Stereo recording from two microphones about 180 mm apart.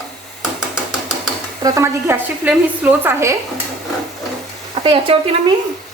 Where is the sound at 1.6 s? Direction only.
15° right (ahead or behind).